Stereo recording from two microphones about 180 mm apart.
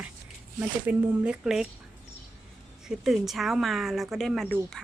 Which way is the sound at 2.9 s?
Centre (ahead or behind).